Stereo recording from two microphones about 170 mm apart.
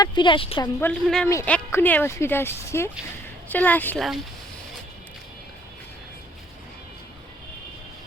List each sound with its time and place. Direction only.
0.0 s a woman's voice: 25° left (ahead or behind)
0.8 s speech: 5° left (ahead or behind)